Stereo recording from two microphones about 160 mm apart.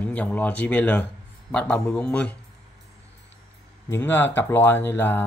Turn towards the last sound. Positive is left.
turn(degrees=15)  # may be behind; listen again after turning